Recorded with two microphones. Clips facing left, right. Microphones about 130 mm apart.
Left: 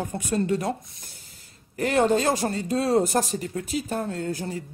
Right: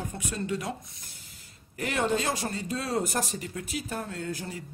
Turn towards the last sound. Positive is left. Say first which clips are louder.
# left 6 dB
turn(degrees=35)  # may be behind; listen again after turning